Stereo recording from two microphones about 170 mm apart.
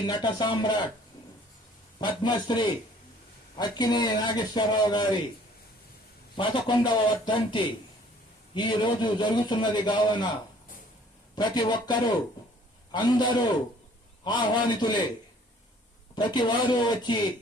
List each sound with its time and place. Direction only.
0.1 s a man's voice: 25° left (ahead or behind)
2.0 s a man's voice: 25° left (ahead or behind)
6.3 s a man's voice: 30° left (ahead or behind)
11.3 s a man's voice: 25° left (ahead or behind)
16.1 s a man's voice: 25° left (ahead or behind)